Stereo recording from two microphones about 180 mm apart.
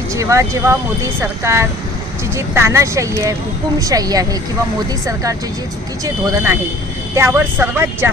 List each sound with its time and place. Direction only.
0.1 s speech: 15° right (ahead or behind)
6.0 s speech: 15° right (ahead or behind)